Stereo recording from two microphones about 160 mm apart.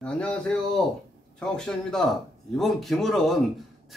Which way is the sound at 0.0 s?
5° left (ahead or behind).